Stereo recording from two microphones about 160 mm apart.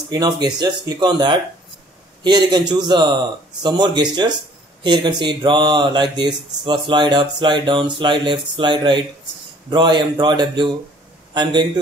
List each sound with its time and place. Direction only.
0.1 s speech: 25° right (ahead or behind)